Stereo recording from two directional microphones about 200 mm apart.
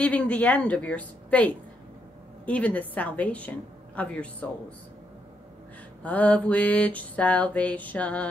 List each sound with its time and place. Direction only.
0.0 s mantra: 5° left (ahead or behind)
6.0 s mantra: 5° left (ahead or behind)